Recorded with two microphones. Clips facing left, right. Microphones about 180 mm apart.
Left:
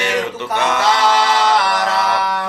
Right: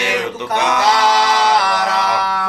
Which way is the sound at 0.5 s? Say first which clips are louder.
Right 1 dB; 15° right (ahead or behind).